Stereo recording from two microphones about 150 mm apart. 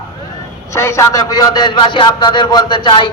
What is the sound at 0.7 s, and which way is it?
A man's voice, 20° left (ahead or behind).